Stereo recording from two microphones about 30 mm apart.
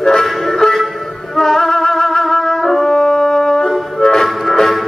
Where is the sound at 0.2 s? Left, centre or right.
Centre.